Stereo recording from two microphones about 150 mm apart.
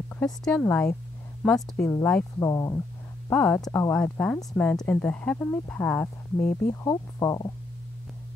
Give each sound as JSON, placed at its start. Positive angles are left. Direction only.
{"t": 0.1, "sound": "speech", "side_deg": 10}
{"t": 2.3, "sound": "speech", "side_deg": 25}
{"t": 3.3, "sound": "speech", "side_deg": 5}
{"t": 6.7, "sound": "speech", "side_deg": 20}